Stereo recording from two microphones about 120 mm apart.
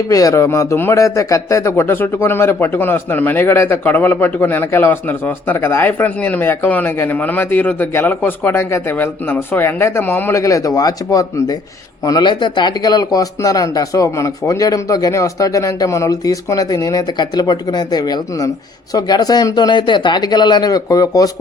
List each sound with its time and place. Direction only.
0.1 s speech: 30° left (ahead or behind)
10.3 s speech: 30° left (ahead or behind)